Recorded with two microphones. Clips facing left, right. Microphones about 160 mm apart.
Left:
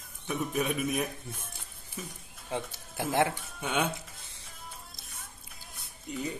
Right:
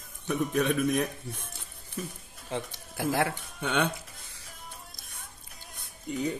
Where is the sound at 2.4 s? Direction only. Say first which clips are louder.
Right 1 dB; 15° left (ahead or behind).